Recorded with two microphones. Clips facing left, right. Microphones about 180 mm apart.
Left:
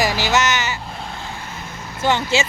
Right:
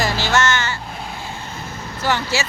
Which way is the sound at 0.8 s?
Centre (ahead or behind).